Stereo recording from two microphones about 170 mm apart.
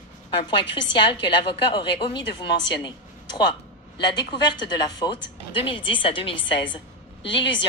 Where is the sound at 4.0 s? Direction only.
25° left (ahead or behind).